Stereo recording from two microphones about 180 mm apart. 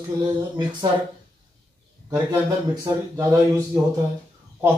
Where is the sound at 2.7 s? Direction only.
15° right (ahead or behind).